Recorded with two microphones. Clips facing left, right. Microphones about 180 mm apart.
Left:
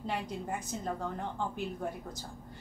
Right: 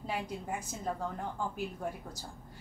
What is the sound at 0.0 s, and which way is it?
Speech, 5° right (ahead or behind).